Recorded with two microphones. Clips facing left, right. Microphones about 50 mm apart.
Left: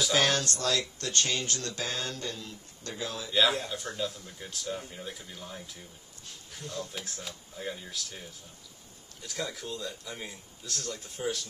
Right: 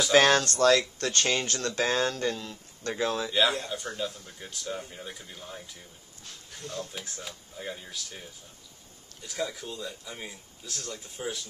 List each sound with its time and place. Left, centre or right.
0.1 s speech: right
0.9 s speech: right
2.9 s speech: right
3.3 s speech: centre
6.9 s speech: centre
9.3 s speech: centre